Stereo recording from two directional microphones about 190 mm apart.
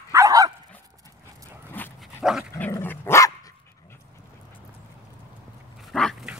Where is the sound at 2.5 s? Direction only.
15° left (ahead or behind).